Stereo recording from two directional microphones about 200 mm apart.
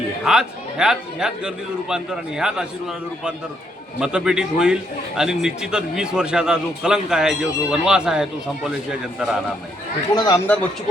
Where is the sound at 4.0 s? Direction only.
5° right (ahead or behind).